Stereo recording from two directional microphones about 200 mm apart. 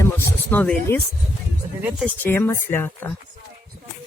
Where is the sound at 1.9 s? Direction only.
10° right (ahead or behind).